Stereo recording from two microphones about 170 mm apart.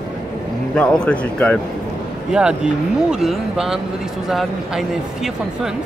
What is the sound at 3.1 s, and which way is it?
Speech, centre (ahead or behind).